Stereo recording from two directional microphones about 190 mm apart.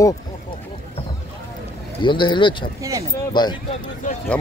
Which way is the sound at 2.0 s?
25° left (ahead or behind).